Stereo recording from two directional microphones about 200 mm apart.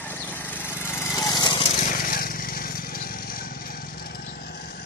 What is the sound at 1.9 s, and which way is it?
Vehicle, 45° left (ahead or behind).